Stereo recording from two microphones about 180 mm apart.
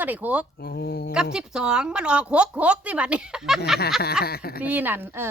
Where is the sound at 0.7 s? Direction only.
65° left (ahead or behind).